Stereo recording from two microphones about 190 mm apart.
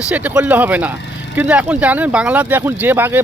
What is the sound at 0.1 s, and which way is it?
Speech, 5° right (ahead or behind).